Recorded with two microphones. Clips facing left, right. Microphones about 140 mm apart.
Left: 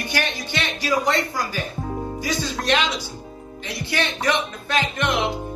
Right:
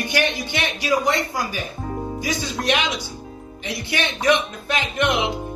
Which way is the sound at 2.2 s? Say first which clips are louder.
Right 1 dB; 15° right (ahead or behind).